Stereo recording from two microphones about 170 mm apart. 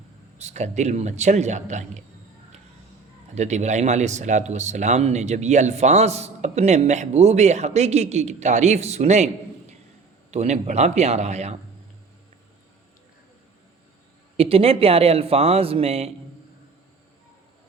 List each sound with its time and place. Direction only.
0.3 s a man's voice: 40° right (ahead or behind)
3.3 s speech: 40° right (ahead or behind)
14.3 s speech: 35° right (ahead or behind)